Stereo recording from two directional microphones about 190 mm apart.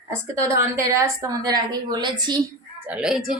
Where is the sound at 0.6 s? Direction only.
15° right (ahead or behind).